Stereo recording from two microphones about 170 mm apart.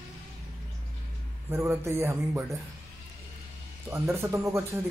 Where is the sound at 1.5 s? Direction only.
15° right (ahead or behind).